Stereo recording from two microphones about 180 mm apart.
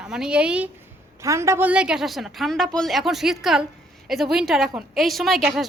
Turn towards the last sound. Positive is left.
turn(degrees=0)  # may be behind; listen again after turning